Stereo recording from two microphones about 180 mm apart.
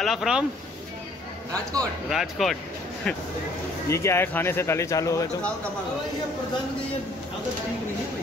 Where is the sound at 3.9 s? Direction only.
15° left (ahead or behind).